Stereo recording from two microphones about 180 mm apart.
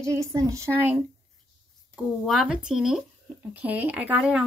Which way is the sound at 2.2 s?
Centre (ahead or behind).